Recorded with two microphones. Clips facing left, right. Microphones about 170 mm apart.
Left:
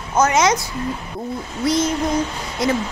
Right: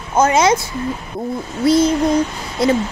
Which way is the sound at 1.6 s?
30° right (ahead or behind).